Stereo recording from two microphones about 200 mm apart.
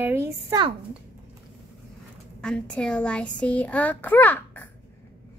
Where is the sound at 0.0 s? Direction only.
10° right (ahead or behind).